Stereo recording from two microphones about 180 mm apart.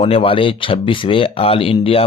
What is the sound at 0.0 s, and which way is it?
Speech, 30° left (ahead or behind).